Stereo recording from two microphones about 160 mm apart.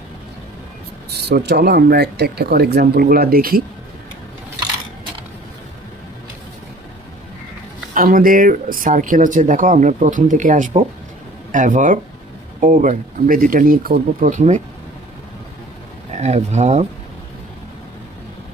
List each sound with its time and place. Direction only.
1.3 s speech: 90° right; by 3.6 s 65° right (ahead or behind)
7.9 s speech: 60° right (ahead or behind)
16.1 s speech: 45° right (ahead or behind)